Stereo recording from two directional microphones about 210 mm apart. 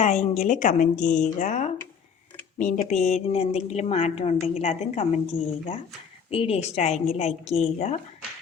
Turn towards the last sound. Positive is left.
turn(degrees=30)  # may be behind; listen again after turning